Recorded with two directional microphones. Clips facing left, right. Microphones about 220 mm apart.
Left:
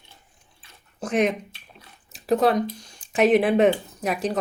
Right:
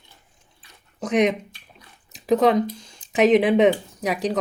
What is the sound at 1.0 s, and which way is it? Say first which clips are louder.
Speech: right 2 dB; 90° right.